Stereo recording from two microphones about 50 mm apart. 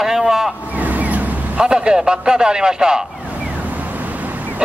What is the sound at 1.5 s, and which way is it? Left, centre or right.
A man's voice, centre.